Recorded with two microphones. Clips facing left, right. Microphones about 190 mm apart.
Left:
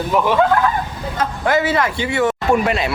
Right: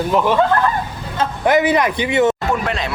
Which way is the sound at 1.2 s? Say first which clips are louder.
Right 3 dB; 20° right (ahead or behind).